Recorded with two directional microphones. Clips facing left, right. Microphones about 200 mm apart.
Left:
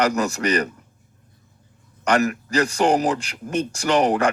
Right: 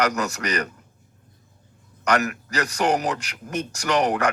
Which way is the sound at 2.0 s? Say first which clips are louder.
Left 3 dB; 30° left (ahead or behind).